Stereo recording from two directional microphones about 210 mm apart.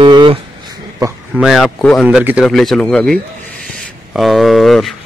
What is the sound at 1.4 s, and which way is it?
A man's voice, centre (ahead or behind).